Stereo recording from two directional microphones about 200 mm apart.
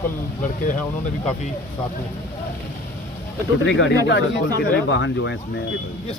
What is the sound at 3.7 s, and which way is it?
Speech, 65° left (ahead or behind).